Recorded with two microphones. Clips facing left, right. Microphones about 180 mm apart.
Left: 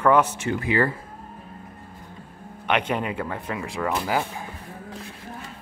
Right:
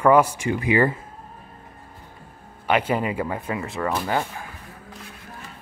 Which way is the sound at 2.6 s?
5° right (ahead or behind).